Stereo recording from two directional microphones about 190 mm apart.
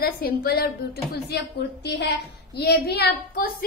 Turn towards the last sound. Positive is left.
turn(degrees=55)  # may be behind; listen again after turning